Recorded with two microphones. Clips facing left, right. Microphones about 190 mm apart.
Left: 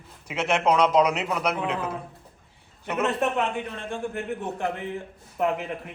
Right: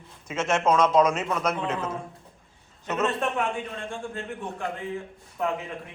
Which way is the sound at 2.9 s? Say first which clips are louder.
Left 1 dB; 10° left (ahead or behind).